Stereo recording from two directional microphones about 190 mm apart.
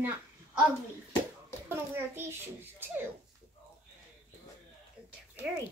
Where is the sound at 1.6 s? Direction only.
10° right (ahead or behind).